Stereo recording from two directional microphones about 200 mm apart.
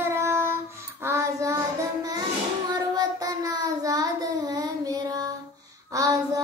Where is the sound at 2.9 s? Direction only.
20° right (ahead or behind).